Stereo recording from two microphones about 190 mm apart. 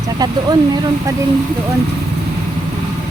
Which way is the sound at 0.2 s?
20° right (ahead or behind).